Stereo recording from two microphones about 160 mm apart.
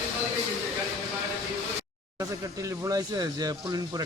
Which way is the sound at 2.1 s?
20° right (ahead or behind).